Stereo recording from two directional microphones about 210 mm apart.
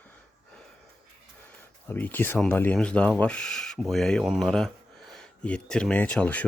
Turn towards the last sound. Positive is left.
turn(degrees=5)  # may be behind; listen again after turning